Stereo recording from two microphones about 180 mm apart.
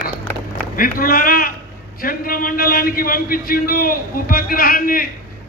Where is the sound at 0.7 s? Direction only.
50° left (ahead or behind).